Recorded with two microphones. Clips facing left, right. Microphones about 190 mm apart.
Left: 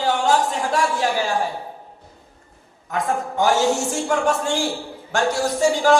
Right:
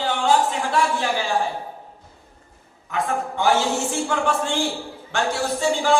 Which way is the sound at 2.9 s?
40° left (ahead or behind).